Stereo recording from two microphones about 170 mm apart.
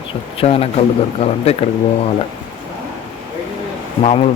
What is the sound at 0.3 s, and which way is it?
Speech, 35° left (ahead or behind).